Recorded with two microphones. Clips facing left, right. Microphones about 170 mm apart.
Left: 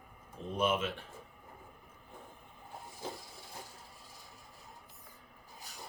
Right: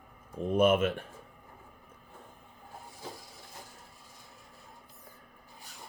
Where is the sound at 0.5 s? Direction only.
55° right (ahead or behind).